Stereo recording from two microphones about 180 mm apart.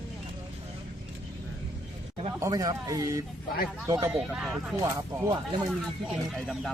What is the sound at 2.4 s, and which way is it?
A man's voice, 20° right (ahead or behind).